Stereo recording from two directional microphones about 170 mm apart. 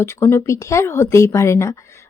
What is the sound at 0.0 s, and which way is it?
Speech, 15° left (ahead or behind).